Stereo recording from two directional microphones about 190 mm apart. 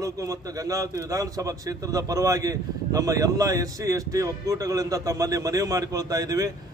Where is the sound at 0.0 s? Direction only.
15° right (ahead or behind).